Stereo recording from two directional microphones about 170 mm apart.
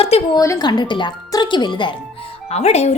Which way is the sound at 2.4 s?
40° left (ahead or behind).